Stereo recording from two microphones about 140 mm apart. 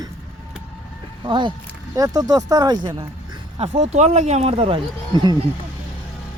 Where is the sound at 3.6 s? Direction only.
50° right (ahead or behind).